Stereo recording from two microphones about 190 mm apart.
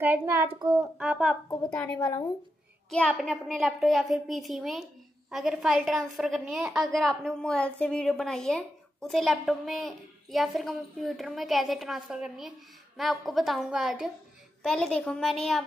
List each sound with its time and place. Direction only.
0.0 s a child's voice: 10° right (ahead or behind)
2.0 s speech: 20° left (ahead or behind)
2.9 s a woman's voice: 5° left (ahead or behind)